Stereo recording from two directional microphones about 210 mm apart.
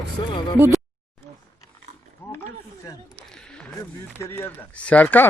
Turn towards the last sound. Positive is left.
turn(degrees=10)  # may be behind; listen again after turning